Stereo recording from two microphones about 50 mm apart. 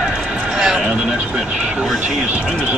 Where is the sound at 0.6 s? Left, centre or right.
Centre.